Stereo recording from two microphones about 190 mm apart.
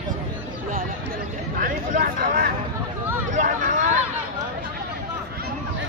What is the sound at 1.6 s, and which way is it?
Speech, 45° right (ahead or behind).